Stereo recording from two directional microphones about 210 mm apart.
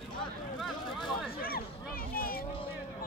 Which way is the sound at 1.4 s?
45° left (ahead or behind).